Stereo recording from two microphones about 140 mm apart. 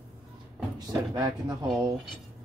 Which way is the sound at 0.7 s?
30° right (ahead or behind).